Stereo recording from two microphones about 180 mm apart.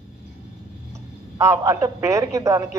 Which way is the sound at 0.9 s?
15° right (ahead or behind).